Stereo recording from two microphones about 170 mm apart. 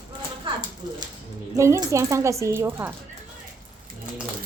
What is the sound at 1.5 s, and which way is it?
A woman's voice, 15° right (ahead or behind).